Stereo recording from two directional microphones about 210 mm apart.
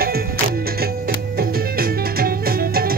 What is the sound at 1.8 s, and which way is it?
Music, 45° right (ahead or behind).